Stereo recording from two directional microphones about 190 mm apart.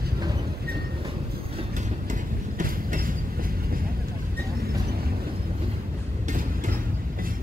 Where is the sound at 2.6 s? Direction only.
45° right (ahead or behind).